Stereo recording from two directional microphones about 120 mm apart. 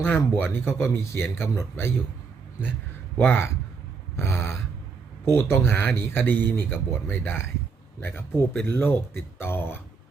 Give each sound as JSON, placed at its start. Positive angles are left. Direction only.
{"t": 0.0, "sound": "speech", "side_deg": 15}
{"t": 3.2, "sound": "speech", "side_deg": 20}